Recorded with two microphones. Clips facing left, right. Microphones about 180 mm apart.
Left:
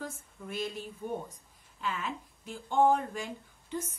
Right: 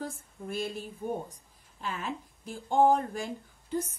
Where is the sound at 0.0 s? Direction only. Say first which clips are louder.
Right 3 dB; 35° right (ahead or behind).